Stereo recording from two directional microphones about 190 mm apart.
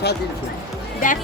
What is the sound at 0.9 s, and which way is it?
Speech, 45° left (ahead or behind).